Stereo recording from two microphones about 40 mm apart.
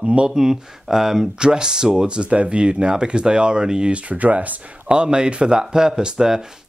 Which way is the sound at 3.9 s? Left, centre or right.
Right.